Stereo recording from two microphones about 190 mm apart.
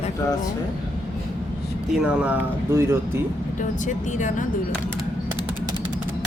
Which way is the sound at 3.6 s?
40° left (ahead or behind).